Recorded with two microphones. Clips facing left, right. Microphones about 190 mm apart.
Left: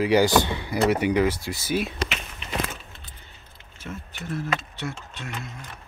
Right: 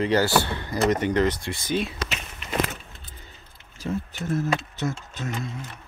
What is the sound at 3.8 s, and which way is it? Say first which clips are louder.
Speech: right 7 dB; 45° right (ahead or behind).